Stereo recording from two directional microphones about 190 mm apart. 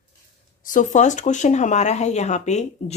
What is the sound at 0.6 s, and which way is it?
Speech, 40° left (ahead or behind).